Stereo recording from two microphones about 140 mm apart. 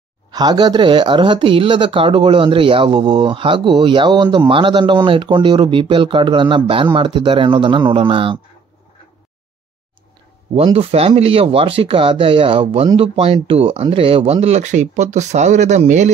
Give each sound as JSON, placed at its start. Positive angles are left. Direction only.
{"t": 0.3, "sound": "speech", "side_deg": -30}
{"t": 10.5, "sound": "speech", "side_deg": -45}